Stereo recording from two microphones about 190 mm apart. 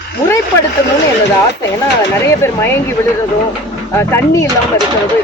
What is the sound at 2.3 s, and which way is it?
Speech, 15° left (ahead or behind).